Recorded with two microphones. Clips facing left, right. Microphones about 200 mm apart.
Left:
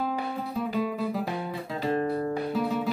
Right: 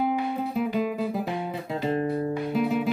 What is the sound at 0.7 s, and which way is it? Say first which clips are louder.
Music: right 2 dB; 20° right (ahead or behind).